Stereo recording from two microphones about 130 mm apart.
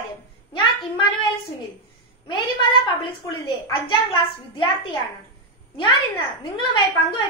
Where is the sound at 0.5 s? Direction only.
40° left (ahead or behind).